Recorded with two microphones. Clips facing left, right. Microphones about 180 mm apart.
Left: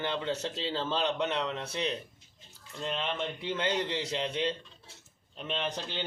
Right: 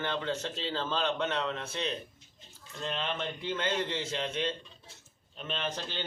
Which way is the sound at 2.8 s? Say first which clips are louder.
Left 1 dB; 15° left (ahead or behind).